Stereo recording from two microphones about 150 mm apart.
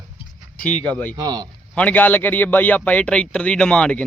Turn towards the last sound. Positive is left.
turn(degrees=5)  # may be behind; listen again after turning